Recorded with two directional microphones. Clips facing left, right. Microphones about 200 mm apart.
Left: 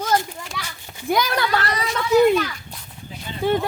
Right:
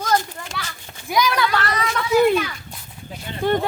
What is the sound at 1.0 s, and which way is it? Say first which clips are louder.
Speech: even; 55° left (ahead or behind).